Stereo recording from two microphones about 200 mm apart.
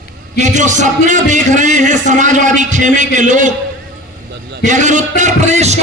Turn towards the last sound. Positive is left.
turn(degrees=-35)  # may be behind; listen again after turning